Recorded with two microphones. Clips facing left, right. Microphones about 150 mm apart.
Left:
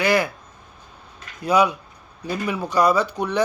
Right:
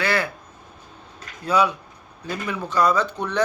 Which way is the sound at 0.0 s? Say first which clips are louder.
Left 4 dB; 15° left (ahead or behind).